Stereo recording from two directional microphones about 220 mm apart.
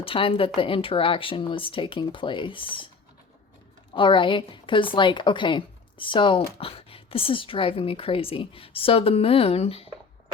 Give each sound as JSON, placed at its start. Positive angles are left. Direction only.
{"t": 0.0, "sound": "a woman's voice", "side_deg": 25}
{"t": 3.9, "sound": "a woman's voice", "side_deg": 20}